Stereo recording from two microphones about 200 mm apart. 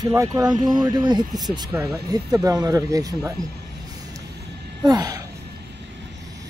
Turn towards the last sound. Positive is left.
turn(degrees=-20)  # may be behind; listen again after turning